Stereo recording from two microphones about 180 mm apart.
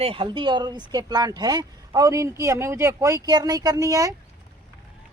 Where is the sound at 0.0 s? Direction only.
30° right (ahead or behind).